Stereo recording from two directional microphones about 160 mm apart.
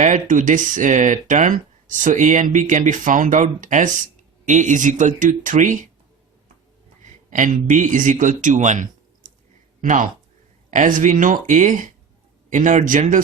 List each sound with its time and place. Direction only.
0.0 s speech: 50° right (ahead or behind)
7.3 s speech: 50° right (ahead or behind)